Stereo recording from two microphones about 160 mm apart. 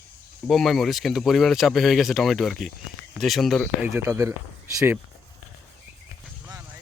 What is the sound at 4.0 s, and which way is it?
Speech, 15° right (ahead or behind).